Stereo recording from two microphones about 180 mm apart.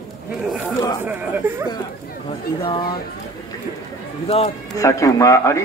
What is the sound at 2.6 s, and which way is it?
Speech, 25° left (ahead or behind).